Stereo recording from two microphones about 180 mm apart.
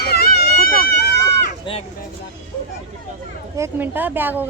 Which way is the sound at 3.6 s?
10° right (ahead or behind).